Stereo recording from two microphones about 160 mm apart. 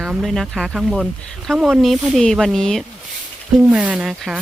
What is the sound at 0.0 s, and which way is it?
Speech, 5° right (ahead or behind).